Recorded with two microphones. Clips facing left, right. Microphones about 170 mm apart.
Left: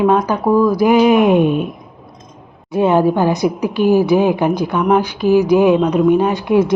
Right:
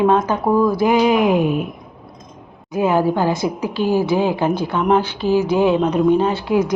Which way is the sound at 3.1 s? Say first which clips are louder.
Left 4 dB; 20° left (ahead or behind).